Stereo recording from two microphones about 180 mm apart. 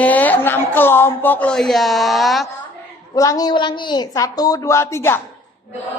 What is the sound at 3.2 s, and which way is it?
A woman's voice, 20° left (ahead or behind).